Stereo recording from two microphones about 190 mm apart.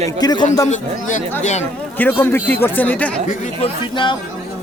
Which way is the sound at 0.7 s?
40° left (ahead or behind).